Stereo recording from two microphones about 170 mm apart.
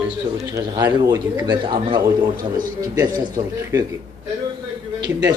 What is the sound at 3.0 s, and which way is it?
Speech, 20° right (ahead or behind).